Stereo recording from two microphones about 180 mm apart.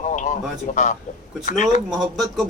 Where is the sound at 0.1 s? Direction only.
45° left (ahead or behind).